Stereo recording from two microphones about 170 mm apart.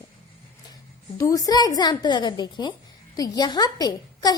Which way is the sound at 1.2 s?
20° left (ahead or behind).